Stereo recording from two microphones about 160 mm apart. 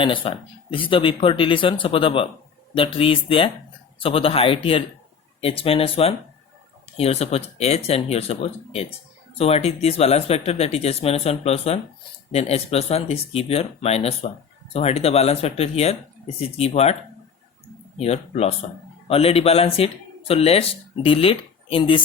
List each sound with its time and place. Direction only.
0.0 s speech: 30° left (ahead or behind)
18.0 s speech: 40° left (ahead or behind)